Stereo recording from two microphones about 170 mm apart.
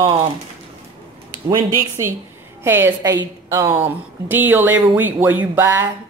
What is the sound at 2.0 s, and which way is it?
Speech, 15° right (ahead or behind).